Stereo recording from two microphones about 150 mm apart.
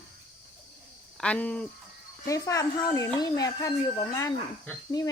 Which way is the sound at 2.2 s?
20° left (ahead or behind).